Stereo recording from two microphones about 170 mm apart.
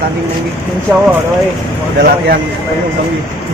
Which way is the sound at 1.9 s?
65° right (ahead or behind).